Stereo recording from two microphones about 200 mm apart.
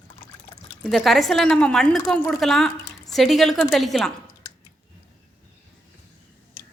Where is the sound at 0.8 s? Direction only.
Centre (ahead or behind).